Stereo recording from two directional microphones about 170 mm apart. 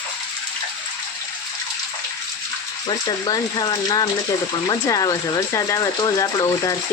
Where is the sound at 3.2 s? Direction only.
25° left (ahead or behind).